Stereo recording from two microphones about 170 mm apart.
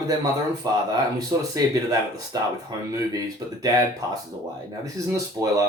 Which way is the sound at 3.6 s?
20° right (ahead or behind).